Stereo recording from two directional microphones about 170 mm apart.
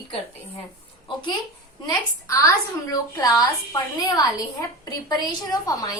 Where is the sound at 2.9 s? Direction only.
20° left (ahead or behind).